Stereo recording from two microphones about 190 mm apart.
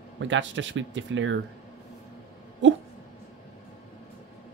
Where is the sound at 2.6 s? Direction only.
75° right (ahead or behind).